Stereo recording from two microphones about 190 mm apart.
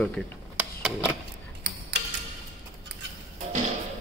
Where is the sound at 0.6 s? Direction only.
5° right (ahead or behind).